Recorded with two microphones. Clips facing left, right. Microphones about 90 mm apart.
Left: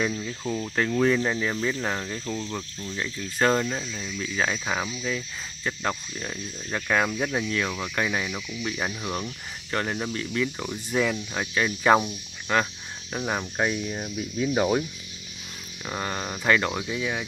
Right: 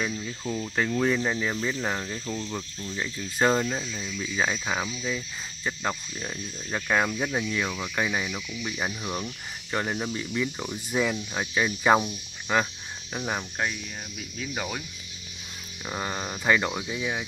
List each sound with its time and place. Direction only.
0.1 s speech: 10° left (ahead or behind); by 10.5 s 10° right (ahead or behind)
10.6 s speech: centre (ahead or behind)
13.1 s speech: centre (ahead or behind)
13.4 s speech: 15° left (ahead or behind)
15.8 s speech: 5° right (ahead or behind)